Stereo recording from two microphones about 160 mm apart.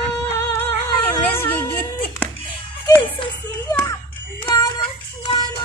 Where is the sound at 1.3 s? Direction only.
15° left (ahead or behind).